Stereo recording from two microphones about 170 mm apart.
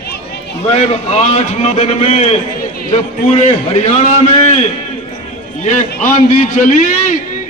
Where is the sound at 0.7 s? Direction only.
40° left (ahead or behind).